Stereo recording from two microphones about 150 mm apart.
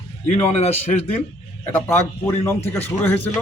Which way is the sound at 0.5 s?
45° left (ahead or behind).